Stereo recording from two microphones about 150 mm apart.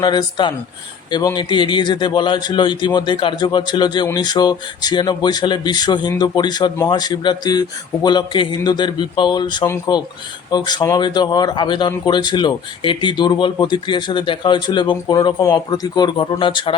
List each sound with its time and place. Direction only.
0.0 s speech: 30° left (ahead or behind)
9.6 s speech: 15° left (ahead or behind)
10.5 s speech: 30° left (ahead or behind)